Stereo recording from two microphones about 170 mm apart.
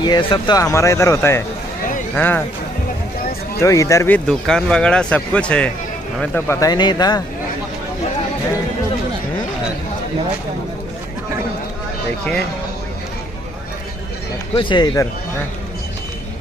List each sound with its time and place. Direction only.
0.0 s speech: 25° left (ahead or behind); by 2.4 s 10° left (ahead or behind)
3.6 s speech: 20° left (ahead or behind)
4.3 s speech: 5° left (ahead or behind); by 7.2 s 25° left (ahead or behind)
14.5 s speech: 30° left (ahead or behind)